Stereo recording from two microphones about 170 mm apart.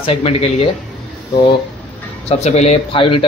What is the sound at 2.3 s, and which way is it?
Speech, 40° left (ahead or behind).